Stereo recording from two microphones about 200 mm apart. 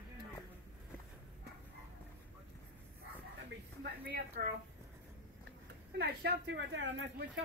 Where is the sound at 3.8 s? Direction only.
50° right (ahead or behind).